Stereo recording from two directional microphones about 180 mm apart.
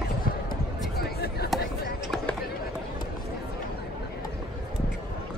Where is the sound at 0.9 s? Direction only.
60° left (ahead or behind).